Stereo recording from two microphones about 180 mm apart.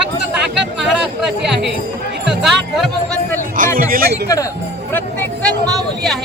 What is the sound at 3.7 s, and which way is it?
Speech, 55° right (ahead or behind).